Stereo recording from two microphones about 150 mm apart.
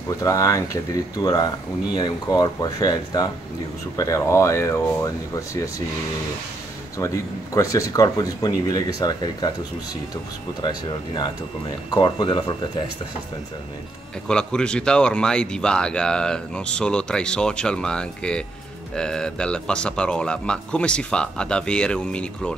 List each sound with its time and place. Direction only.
0.2 s speech: 20° left (ahead or behind)
7.5 s speech: 20° left (ahead or behind)
10.6 s speech: 30° left (ahead or behind)
14.2 s speech: 5° left (ahead or behind)